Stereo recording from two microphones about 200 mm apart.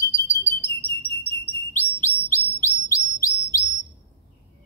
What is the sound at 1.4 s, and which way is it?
Bird, 10° left (ahead or behind).